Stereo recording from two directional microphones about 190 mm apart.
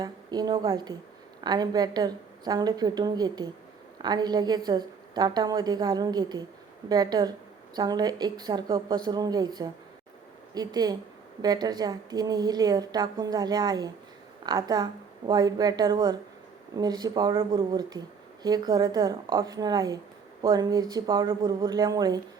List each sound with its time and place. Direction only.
0.0 s a woman's voice: 20° right (ahead or behind)
10.5 s a woman's voice: 20° right (ahead or behind)